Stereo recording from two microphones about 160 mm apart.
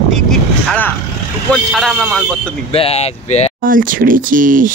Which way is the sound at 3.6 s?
60° right (ahead or behind).